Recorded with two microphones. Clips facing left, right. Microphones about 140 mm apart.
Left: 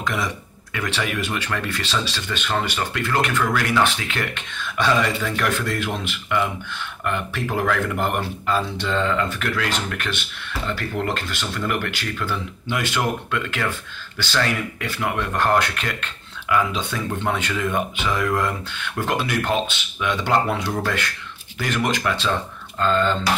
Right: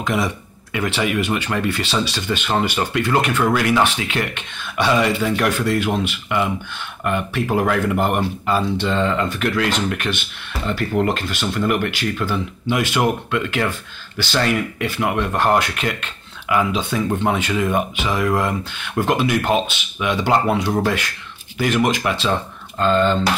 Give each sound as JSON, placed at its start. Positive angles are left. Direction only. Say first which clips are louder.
{"t": 0.0, "sound": "speech", "louder": "right 4 dB", "side_deg": -20}
{"t": 7.1, "sound": "speech", "louder": "right 5 dB", "side_deg": -15}
{"t": 22.3, "sound": "speech", "louder": "right 3 dB", "side_deg": -25}